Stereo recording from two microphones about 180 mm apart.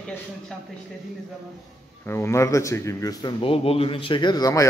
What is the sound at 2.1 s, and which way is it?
Speech, 15° left (ahead or behind).